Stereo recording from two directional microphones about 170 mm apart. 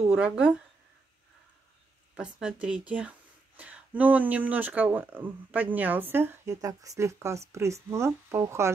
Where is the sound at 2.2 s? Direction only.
5° right (ahead or behind).